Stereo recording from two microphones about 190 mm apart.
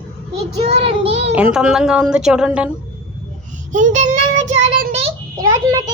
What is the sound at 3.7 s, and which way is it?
Child singing, 40° right (ahead or behind).